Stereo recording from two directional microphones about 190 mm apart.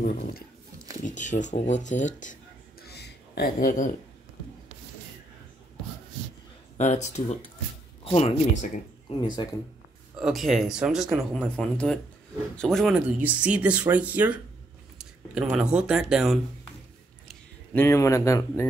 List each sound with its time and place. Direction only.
1.0 s speech: 40° left (ahead or behind)
2.8 s a sound: 60° left (ahead or behind); by 3.9 s 45° left (ahead or behind)
6.8 s speech: 40° left (ahead or behind)
9.1 s speech: 25° left (ahead or behind)
10.1 s speech: centre (ahead or behind)
17.3 s speech: 10° left (ahead or behind)